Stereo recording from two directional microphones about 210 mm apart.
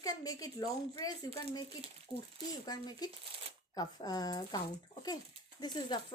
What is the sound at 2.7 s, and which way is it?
A woman's voice, 20° left (ahead or behind).